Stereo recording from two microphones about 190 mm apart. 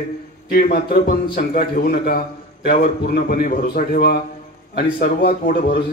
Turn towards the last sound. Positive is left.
turn(degrees=60)  # may be behind; listen again after turning